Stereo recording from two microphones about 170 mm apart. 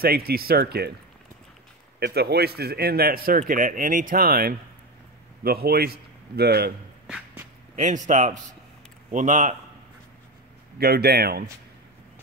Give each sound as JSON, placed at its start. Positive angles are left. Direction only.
{"t": 0.0, "sound": "speech", "side_deg": -65}
{"t": 2.0, "sound": "a man's voice", "side_deg": -75}
{"t": 7.7, "sound": "speech", "side_deg": -45}
{"t": 10.8, "sound": "speech", "side_deg": -65}